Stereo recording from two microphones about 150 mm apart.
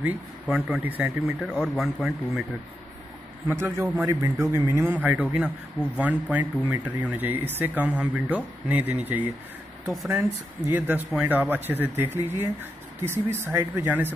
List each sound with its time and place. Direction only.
0.0 s speech: 5° right (ahead or behind)
3.4 s speech: 15° right (ahead or behind)